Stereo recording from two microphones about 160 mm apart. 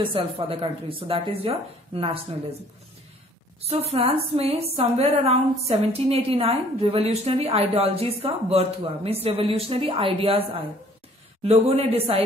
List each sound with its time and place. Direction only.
0.0 s a woman's voice: 35° right (ahead or behind)
3.7 s a woman's voice: 40° right (ahead or behind)